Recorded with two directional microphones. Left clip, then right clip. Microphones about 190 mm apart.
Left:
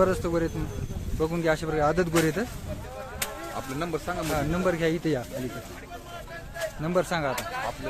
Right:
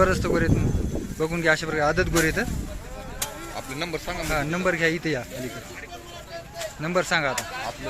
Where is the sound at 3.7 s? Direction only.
50° left (ahead or behind).